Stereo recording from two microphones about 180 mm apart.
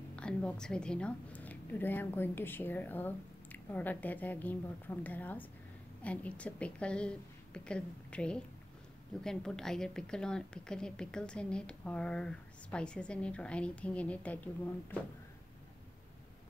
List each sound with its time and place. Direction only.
0.1 s a woman's voice: 5° left (ahead or behind)